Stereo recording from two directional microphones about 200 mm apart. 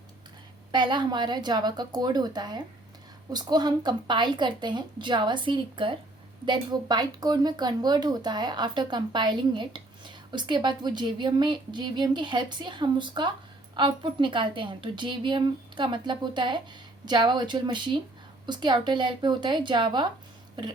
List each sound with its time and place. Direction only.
0.7 s speech: 20° right (ahead or behind)